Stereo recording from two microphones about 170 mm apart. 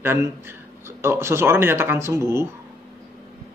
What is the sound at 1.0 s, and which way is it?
Speech, 15° right (ahead or behind).